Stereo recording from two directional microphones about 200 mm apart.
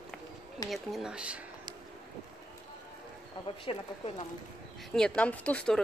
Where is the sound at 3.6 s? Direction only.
25° left (ahead or behind).